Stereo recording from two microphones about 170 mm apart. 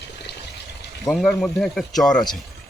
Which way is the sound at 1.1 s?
5° left (ahead or behind).